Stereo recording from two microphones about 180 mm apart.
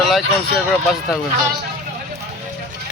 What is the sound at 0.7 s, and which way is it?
Speech, centre (ahead or behind).